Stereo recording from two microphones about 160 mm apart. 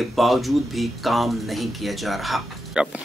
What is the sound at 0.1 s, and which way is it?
Speech, centre (ahead or behind).